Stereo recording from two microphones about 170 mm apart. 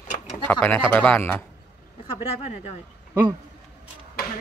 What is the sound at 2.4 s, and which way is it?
Speech, 40° left (ahead or behind).